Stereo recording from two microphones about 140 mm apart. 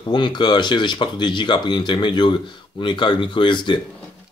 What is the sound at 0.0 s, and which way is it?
Speech, 30° left (ahead or behind).